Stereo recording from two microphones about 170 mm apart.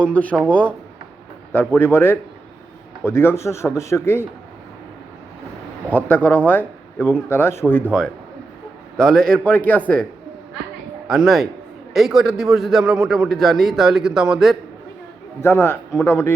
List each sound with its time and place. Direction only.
0.0 s a man's voice: 10° left (ahead or behind)
6.1 s a man's voice: 10° left (ahead or behind)
9.0 s a man's voice: 5° left (ahead or behind)
11.1 s a man's voice: centre (ahead or behind)
15.4 s a man's voice: 15° left (ahead or behind)